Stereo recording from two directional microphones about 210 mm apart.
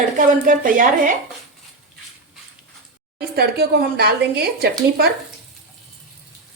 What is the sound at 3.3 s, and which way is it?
Speech, 50° right (ahead or behind).